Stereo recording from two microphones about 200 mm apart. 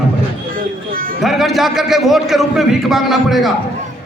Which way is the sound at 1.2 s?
Centre (ahead or behind).